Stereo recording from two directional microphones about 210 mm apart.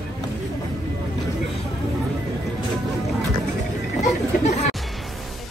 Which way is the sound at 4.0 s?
35° left (ahead or behind).